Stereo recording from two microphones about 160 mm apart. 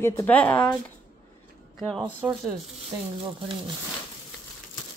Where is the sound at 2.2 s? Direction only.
5° right (ahead or behind).